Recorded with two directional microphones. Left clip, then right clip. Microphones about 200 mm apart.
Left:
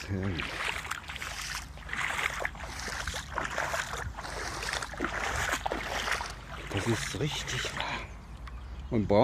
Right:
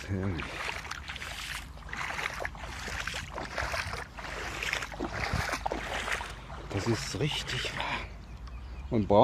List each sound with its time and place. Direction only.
0.2 s boat: 5° left (ahead or behind)
5.1 s a sound: centre (ahead or behind)
6.8 s speech: 5° right (ahead or behind)